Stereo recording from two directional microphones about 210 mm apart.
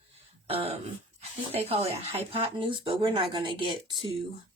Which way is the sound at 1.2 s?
30° right (ahead or behind).